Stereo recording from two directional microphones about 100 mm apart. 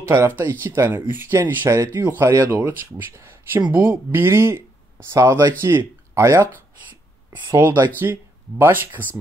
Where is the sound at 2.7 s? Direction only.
25° right (ahead or behind).